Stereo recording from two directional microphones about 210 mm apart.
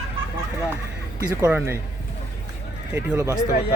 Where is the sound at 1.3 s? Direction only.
10° right (ahead or behind).